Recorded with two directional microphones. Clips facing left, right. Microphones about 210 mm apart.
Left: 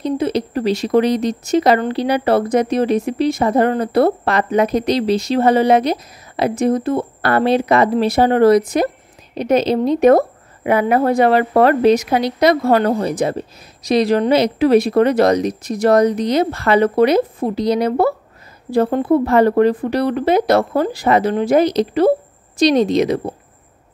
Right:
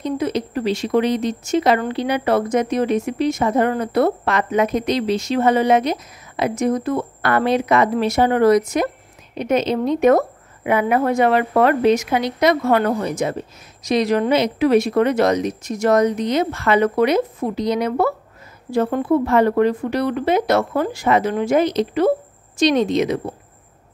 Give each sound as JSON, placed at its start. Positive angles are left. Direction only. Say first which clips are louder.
{"t": 0.0, "sound": "speech", "louder": "left 3 dB", "side_deg": 35}